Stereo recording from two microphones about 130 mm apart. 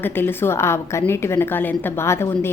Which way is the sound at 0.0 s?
15° left (ahead or behind).